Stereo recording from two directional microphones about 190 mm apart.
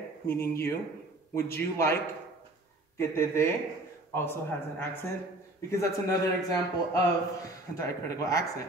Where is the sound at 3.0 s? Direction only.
15° left (ahead or behind).